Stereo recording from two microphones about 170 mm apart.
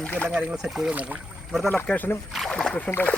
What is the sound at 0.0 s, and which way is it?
Rowboat, 10° left (ahead or behind).